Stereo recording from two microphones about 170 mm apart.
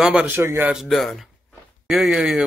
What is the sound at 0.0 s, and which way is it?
A man's voice, 5° right (ahead or behind).